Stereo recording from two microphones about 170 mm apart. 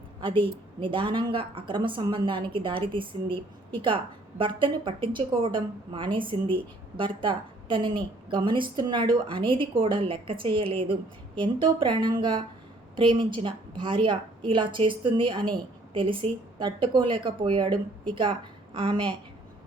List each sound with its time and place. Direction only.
0.2 s a woman's voice: 30° right (ahead or behind)